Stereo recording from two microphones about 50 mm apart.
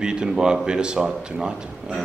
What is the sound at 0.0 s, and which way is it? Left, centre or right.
A man's voice, centre.